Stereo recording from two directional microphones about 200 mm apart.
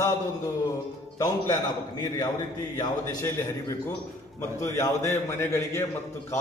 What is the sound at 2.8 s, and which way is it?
A man's voice, 15° left (ahead or behind).